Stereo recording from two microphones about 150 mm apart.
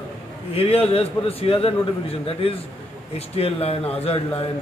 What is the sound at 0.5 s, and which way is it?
A man's voice, 40° left (ahead or behind).